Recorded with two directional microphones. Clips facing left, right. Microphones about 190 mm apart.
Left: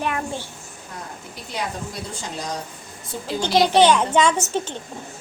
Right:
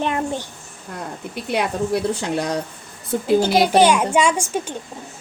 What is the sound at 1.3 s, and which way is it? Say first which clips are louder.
Speech: right 7 dB; 65° right (ahead or behind).